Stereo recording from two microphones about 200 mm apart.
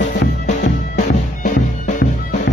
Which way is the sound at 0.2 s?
40° left (ahead or behind).